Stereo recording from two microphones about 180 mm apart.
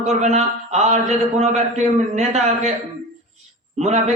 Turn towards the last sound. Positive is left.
turn(degrees=-40)  # may be behind; listen again after turning